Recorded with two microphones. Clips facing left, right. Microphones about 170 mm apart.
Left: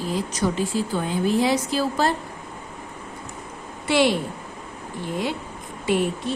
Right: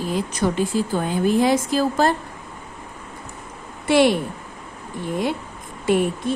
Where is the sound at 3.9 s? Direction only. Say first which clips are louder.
Right 4 dB; 50° right (ahead or behind).